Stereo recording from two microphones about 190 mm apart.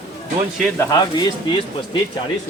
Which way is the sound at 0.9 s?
20° left (ahead or behind).